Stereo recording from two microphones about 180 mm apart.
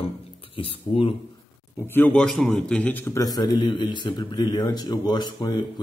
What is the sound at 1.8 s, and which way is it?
A man's voice, 10° left (ahead or behind).